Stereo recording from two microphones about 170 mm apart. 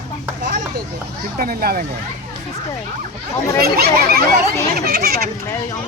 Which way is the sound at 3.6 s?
65° right (ahead or behind).